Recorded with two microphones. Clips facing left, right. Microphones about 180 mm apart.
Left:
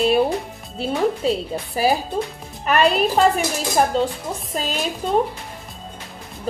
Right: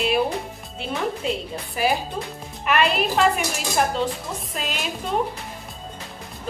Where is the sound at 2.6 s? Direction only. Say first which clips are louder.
Left 4 dB; 35° left (ahead or behind).